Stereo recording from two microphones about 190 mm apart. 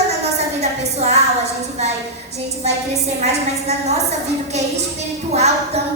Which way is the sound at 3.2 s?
35° right (ahead or behind).